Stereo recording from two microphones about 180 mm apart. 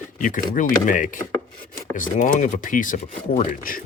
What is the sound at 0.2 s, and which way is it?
Speech, 45° left (ahead or behind).